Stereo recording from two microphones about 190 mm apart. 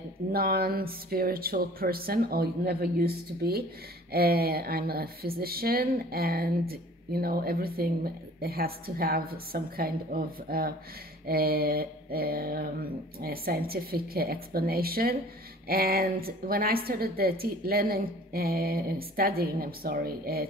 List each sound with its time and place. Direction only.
0.3 s speech: 50° right (ahead or behind)